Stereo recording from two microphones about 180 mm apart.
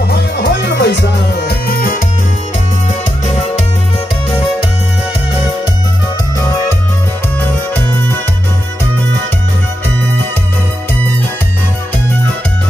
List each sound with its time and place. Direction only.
0.4 s music: 70° left (ahead or behind)
1.7 s music: 55° left (ahead or behind)
3.3 s music: 40° left (ahead or behind)